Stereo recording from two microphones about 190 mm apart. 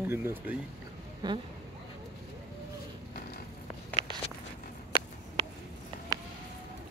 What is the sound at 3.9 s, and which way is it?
Walk, 25° right (ahead or behind).